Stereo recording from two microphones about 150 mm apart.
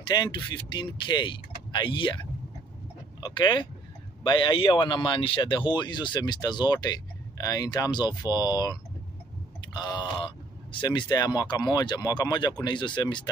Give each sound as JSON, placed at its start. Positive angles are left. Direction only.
{"t": 0.0, "sound": "speech", "side_deg": 30}
{"t": 3.2, "sound": "speech", "side_deg": 35}
{"t": 9.8, "sound": "speech", "side_deg": 30}